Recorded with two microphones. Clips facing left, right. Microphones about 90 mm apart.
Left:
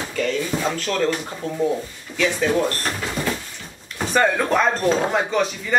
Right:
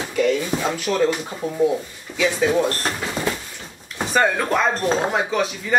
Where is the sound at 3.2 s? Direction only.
25° right (ahead or behind).